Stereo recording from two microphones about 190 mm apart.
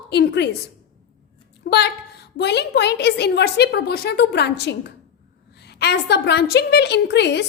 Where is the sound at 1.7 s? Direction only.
60° left (ahead or behind).